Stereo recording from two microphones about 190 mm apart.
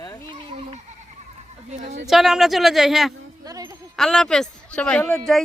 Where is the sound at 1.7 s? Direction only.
35° right (ahead or behind).